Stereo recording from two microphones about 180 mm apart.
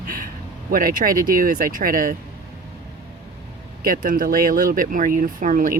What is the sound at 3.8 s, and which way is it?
Speech, 50° right (ahead or behind).